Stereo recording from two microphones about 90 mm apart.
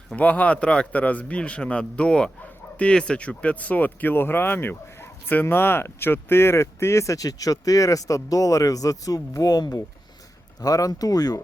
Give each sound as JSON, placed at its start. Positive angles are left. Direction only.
{"t": 0.2, "sound": "a man's voice", "side_deg": 15}